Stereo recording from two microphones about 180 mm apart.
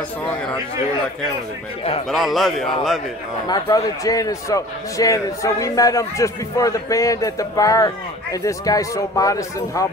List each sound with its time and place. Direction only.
2.0 s a man's voice: centre (ahead or behind)
3.4 s a man's voice: 20° left (ahead or behind)